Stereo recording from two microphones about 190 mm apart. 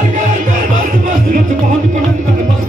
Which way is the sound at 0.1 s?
40° right (ahead or behind).